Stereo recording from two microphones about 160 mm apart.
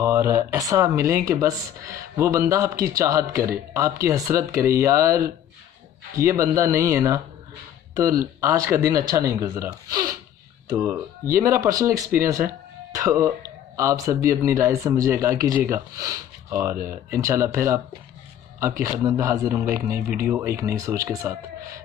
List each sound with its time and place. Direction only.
0.0 s speech: 15° right (ahead or behind)
9.8 s a sound: 25° right (ahead or behind)
10.8 s speech: 15° right (ahead or behind)